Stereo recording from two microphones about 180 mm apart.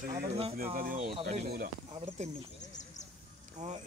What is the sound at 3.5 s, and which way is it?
Speech, 40° right (ahead or behind).